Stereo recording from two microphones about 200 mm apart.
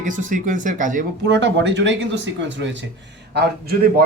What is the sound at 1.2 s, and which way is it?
Speech, 60° right (ahead or behind).